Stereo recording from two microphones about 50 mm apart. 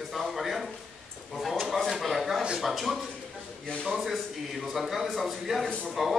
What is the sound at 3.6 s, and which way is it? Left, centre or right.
Speech, centre.